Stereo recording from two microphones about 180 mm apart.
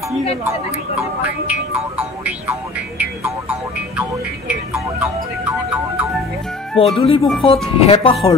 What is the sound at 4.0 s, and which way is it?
Music, 5° right (ahead or behind).